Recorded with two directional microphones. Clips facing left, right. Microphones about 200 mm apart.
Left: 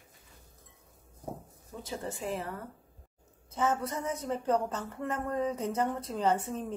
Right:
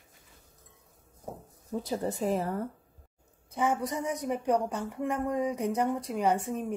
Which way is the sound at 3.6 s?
15° right (ahead or behind).